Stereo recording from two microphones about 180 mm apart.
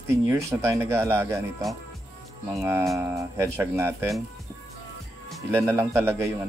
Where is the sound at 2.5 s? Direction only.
15° right (ahead or behind).